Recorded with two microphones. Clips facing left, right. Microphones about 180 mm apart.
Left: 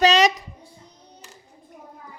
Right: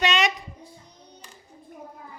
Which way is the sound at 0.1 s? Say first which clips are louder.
Left 6 dB; 40° left (ahead or behind).